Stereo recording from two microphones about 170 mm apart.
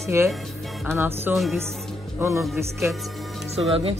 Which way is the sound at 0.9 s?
10° right (ahead or behind).